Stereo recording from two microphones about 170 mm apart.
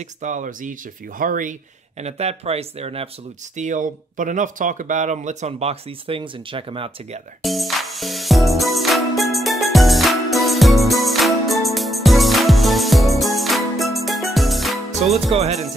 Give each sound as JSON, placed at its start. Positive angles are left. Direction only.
{"t": 0.0, "sound": "speech", "side_deg": -45}
{"t": 3.5, "sound": "speech", "side_deg": -45}
{"t": 7.4, "sound": "music", "side_deg": 0}